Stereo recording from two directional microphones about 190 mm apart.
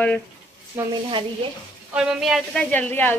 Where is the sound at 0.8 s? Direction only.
10° right (ahead or behind).